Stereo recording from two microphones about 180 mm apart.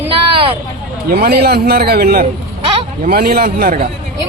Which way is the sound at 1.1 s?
60° right (ahead or behind).